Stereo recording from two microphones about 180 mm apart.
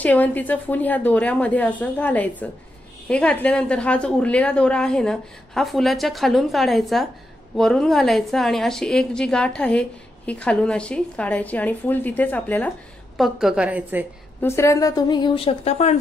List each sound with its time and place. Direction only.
0.0 s a woman's voice: 10° left (ahead or behind)
13.2 s a woman's voice: centre (ahead or behind)
14.4 s a woman's voice: 15° left (ahead or behind); by 16.0 s 35° left (ahead or behind)